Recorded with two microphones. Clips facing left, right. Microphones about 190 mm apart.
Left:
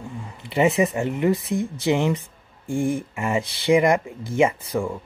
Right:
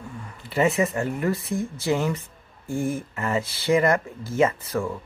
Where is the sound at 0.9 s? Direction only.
20° left (ahead or behind).